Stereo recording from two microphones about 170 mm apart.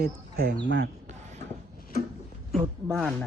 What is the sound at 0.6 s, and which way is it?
Speech, 90° right.